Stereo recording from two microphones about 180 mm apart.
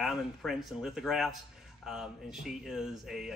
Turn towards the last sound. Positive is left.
turn(degrees=0)  # may be behind; listen again after turning